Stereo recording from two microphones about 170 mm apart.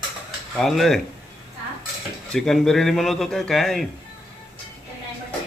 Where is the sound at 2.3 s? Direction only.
5° left (ahead or behind).